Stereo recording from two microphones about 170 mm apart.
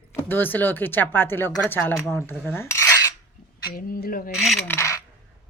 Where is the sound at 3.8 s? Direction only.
60° left (ahead or behind).